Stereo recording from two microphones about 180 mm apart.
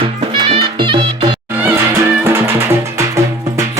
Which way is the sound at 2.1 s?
15° right (ahead or behind).